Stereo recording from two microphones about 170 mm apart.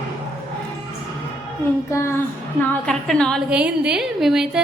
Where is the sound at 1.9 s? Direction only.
15° left (ahead or behind).